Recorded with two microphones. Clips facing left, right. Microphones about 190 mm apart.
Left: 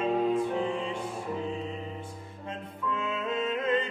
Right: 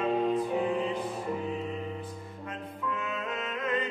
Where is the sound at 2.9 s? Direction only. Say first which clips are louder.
Left 4 dB; 25° left (ahead or behind).